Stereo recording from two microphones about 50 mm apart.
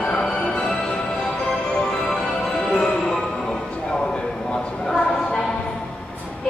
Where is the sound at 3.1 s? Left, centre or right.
Centre.